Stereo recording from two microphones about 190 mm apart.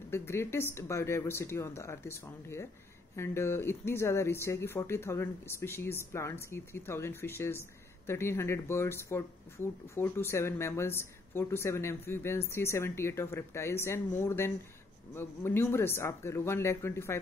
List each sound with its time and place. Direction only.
0.1 s speech: 15° left (ahead or behind)